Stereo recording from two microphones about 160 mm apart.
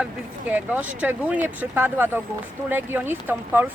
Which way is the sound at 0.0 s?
10° right (ahead or behind).